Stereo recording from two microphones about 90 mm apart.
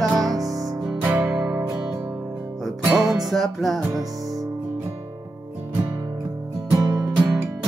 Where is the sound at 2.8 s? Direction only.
45° right (ahead or behind).